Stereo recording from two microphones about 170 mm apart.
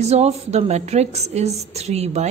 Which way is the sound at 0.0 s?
40° right (ahead or behind).